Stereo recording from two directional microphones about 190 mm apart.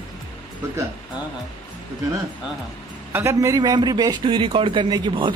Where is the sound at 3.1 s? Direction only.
15° right (ahead or behind).